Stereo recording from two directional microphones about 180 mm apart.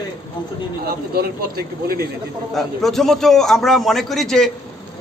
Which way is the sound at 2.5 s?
Centre (ahead or behind).